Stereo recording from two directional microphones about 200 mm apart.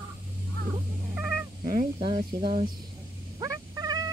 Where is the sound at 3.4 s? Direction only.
20° right (ahead or behind).